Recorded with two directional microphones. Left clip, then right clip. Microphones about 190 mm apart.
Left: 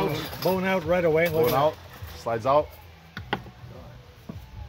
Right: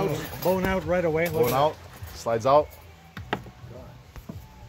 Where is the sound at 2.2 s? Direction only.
45° right (ahead or behind).